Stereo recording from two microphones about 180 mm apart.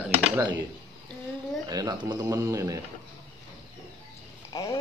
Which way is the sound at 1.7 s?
20° right (ahead or behind).